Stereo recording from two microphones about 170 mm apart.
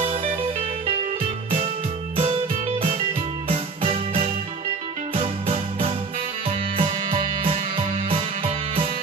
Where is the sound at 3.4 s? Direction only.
35° right (ahead or behind).